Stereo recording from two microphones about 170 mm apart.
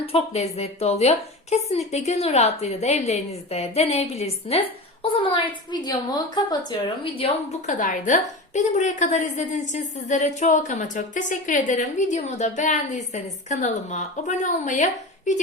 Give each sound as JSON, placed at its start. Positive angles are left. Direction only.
{"t": 0.0, "sound": "a woman's voice", "side_deg": 35}
{"t": 7.7, "sound": "a woman's voice", "side_deg": 50}